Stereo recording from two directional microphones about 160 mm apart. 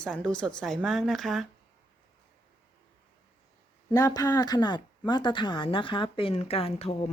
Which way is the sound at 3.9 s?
25° left (ahead or behind).